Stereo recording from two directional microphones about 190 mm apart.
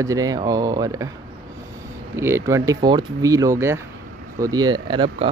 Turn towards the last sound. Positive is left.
turn(degrees=-25)  # may be behind; listen again after turning